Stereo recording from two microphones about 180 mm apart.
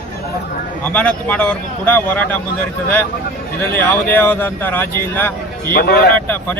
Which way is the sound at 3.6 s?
10° left (ahead or behind).